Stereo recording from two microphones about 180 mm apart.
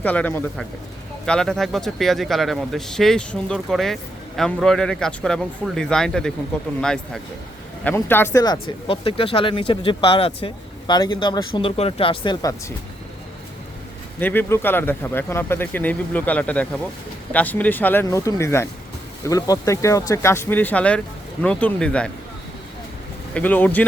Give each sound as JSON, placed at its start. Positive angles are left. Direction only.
{"t": 0.0, "sound": "speech", "side_deg": 10}
{"t": 14.2, "sound": "speech", "side_deg": 10}
{"t": 23.3, "sound": "speech", "side_deg": 10}